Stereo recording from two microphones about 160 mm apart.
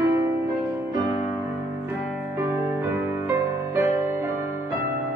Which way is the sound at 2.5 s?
15° right (ahead or behind).